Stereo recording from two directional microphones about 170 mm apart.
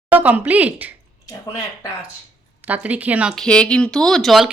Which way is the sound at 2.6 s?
10° right (ahead or behind).